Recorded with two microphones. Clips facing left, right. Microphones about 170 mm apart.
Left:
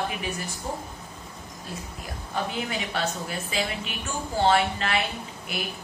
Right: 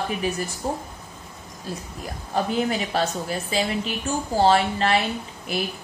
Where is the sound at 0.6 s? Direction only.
35° right (ahead or behind).